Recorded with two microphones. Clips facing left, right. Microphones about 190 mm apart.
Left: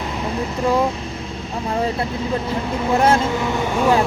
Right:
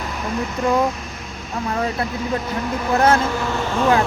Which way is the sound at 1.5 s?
30° left (ahead or behind).